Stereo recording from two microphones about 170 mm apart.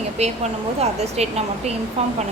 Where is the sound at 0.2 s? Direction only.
40° right (ahead or behind).